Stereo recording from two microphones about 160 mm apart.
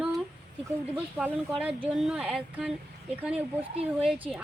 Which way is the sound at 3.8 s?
5° right (ahead or behind).